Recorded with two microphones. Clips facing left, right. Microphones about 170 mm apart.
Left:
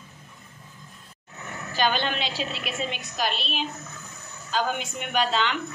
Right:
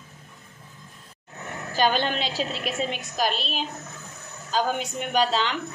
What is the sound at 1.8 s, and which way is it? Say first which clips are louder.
A woman's voice: right 2 dB; 40° right (ahead or behind).